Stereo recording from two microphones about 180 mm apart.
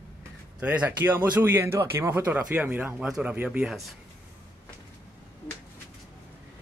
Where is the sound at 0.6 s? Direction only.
5° right (ahead or behind).